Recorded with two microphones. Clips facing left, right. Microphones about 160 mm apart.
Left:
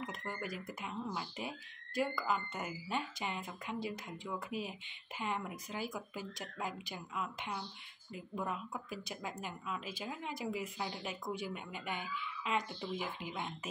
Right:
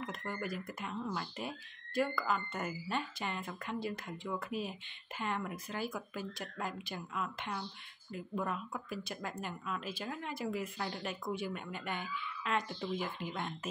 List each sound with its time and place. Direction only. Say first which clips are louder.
0.1 s speech: right 2 dB; 15° left (ahead or behind)